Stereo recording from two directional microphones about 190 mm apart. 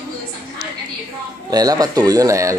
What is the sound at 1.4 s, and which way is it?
Speech, 20° right (ahead or behind).